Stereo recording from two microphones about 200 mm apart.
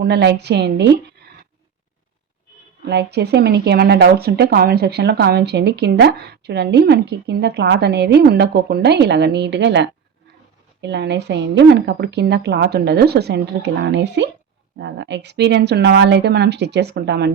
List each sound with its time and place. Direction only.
0.0 s speech: 55° right (ahead or behind)
2.8 s speech: 55° right (ahead or behind)